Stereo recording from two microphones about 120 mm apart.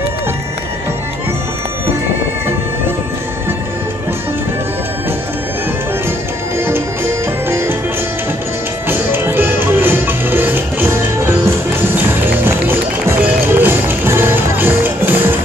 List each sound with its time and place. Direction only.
7.4 s music: 20° right (ahead or behind)
8.8 s music: 20° right (ahead or behind)